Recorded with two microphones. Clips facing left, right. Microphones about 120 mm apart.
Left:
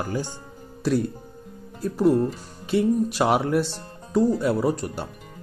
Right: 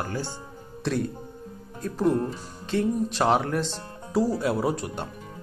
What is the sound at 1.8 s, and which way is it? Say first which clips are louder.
A man's voice: left 4 dB; 10° left (ahead or behind).